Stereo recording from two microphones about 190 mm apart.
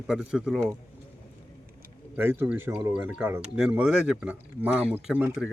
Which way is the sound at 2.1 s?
10° right (ahead or behind).